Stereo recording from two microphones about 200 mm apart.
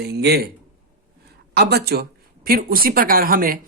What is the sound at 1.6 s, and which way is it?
Speech, 55° right (ahead or behind).